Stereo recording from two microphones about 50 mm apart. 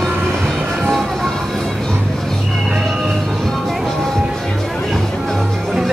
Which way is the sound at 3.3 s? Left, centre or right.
Centre.